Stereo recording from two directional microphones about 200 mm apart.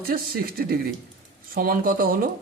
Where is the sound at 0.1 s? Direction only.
45° right (ahead or behind).